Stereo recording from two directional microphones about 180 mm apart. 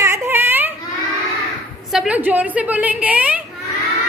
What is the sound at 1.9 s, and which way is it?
A woman's voice, 5° right (ahead or behind).